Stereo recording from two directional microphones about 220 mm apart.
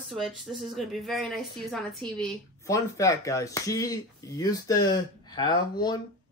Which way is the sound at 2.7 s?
15° left (ahead or behind).